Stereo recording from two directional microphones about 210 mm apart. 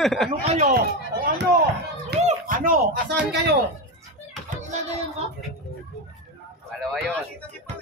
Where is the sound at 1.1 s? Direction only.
50° right (ahead or behind).